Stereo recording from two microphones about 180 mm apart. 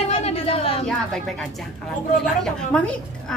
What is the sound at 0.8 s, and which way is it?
A woman's voice, 5° left (ahead or behind).